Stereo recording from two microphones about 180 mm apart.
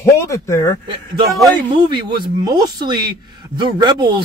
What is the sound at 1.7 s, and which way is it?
Speech, 25° right (ahead or behind).